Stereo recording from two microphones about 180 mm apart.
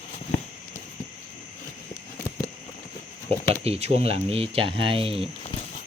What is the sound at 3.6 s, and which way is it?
Speech, 35° right (ahead or behind).